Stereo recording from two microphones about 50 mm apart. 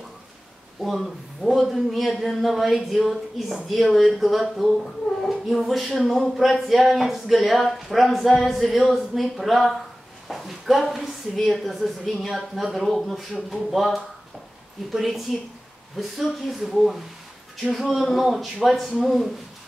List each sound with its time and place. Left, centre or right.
0.7 s speech: centre
5.2 s a sound: centre
5.7 s a woman's voice: centre